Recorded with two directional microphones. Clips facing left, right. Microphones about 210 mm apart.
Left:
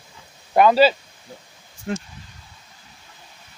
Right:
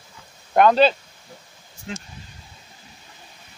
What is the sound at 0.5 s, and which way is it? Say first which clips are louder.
Speech: left 1 dB; 5° left (ahead or behind).